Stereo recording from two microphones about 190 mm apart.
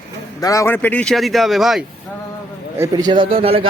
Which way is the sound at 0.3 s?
15° left (ahead or behind).